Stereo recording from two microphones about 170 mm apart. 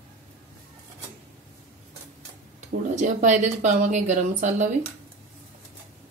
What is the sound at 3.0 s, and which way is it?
Speech, 45° right (ahead or behind).